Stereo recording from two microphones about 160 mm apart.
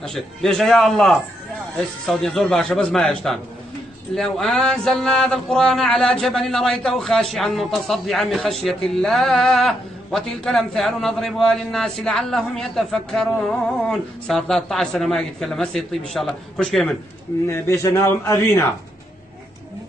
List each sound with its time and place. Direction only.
0.0 s a man's voice: 5° left (ahead or behind)
17.5 s a man's voice: 15° left (ahead or behind)